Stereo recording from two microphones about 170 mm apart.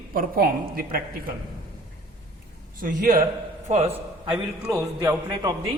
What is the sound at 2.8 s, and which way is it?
Speech, 60° right (ahead or behind).